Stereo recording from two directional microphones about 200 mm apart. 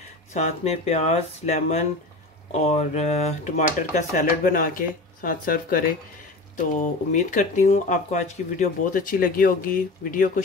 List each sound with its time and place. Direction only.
0.3 s speech: 35° left (ahead or behind)